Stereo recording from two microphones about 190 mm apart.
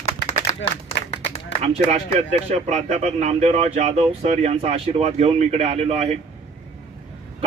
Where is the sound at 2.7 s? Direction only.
35° right (ahead or behind).